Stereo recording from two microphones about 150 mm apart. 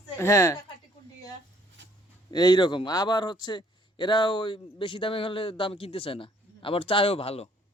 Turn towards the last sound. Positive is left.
turn(degrees=40)  # may be behind; listen again after turning